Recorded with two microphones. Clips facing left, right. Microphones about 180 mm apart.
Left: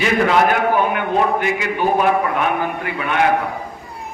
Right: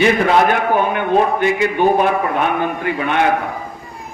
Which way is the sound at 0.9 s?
30° right (ahead or behind).